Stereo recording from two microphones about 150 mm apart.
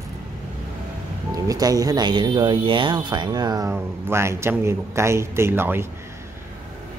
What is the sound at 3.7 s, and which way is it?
A man's voice, 15° right (ahead or behind).